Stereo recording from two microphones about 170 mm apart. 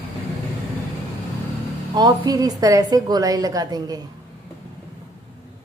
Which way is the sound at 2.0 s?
25° right (ahead or behind).